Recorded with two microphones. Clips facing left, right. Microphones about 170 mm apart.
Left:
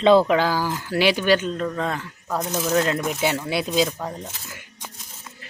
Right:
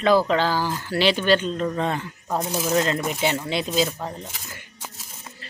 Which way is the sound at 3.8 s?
10° right (ahead or behind).